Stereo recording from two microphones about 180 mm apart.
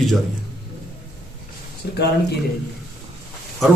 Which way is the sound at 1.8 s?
65° left (ahead or behind).